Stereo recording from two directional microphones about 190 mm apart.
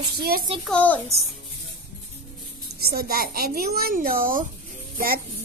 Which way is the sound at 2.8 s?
55° right (ahead or behind).